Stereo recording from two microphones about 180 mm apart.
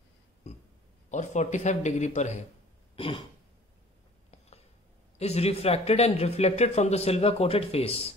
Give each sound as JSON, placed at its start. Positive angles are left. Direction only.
{"t": 0.5, "sound": "a sound", "side_deg": 40}
{"t": 1.1, "sound": "speech", "side_deg": 40}
{"t": 3.0, "sound": "throat clearing", "side_deg": 30}
{"t": 5.2, "sound": "speech", "side_deg": 35}